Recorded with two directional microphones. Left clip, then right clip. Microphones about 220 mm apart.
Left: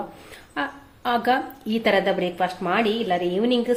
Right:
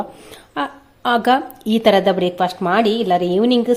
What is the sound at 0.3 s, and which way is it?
A woman's voice, 40° right (ahead or behind).